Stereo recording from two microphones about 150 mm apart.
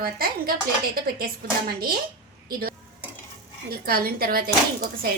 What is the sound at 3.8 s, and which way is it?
Speech, 90° right.